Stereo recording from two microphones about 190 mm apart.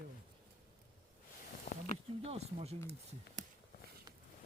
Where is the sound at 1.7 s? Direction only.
35° left (ahead or behind).